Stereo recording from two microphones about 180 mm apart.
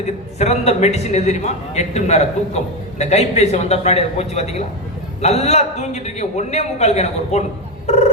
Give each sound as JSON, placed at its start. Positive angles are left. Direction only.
{"t": 0.0, "sound": "a man's voice", "side_deg": 40}